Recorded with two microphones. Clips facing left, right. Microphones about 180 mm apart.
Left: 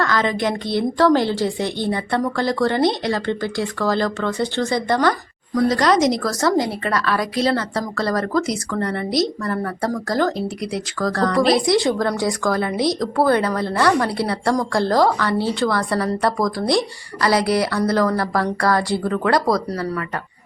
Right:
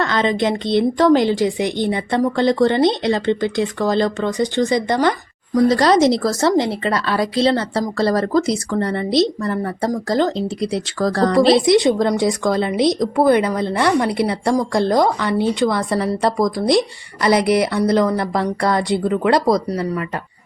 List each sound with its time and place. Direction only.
0.0 s a woman's voice: 20° right (ahead or behind)
5.6 s a woman's voice: 30° right (ahead or behind)